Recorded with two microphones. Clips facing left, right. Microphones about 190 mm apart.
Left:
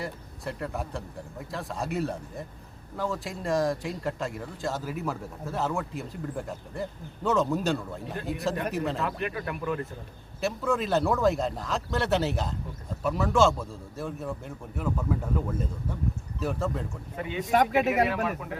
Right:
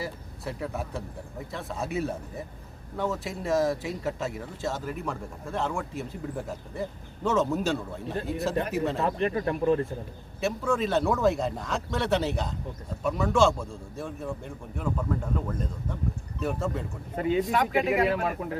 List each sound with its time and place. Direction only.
0.0 s speech: centre (ahead or behind)
9.0 s speech: 30° right (ahead or behind)
10.4 s speech: centre (ahead or behind)
17.2 s speech: 40° right (ahead or behind)
17.5 s speech: 45° left (ahead or behind)
18.1 s speech: 40° right (ahead or behind)